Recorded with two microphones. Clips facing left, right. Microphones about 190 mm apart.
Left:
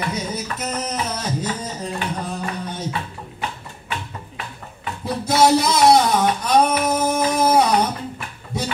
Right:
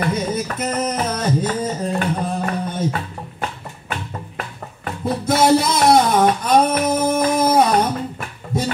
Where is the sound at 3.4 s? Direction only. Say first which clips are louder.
Right 2 dB; 50° right (ahead or behind).